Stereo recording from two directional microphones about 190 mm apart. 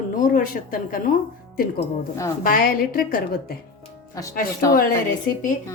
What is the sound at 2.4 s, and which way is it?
Speech, 45° left (ahead or behind).